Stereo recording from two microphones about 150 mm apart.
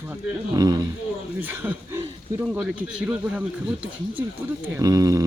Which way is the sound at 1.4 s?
10° right (ahead or behind).